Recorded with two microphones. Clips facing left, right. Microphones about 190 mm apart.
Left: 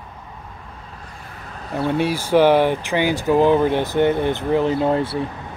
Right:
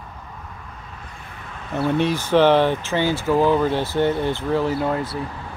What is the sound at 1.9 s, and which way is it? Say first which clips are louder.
Speech: left 1 dB; 10° left (ahead or behind).